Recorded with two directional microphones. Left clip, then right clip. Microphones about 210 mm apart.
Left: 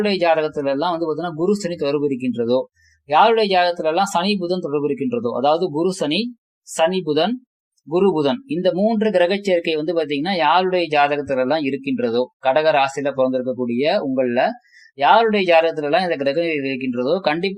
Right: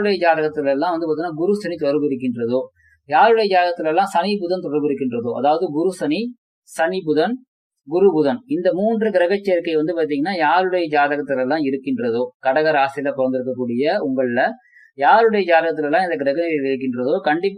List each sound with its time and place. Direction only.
0.0 s speech: 40° left (ahead or behind)